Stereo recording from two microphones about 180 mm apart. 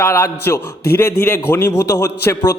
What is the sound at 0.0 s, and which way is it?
A man's voice, 15° left (ahead or behind).